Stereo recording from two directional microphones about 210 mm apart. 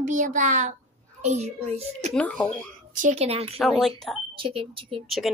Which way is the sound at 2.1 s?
5° left (ahead or behind).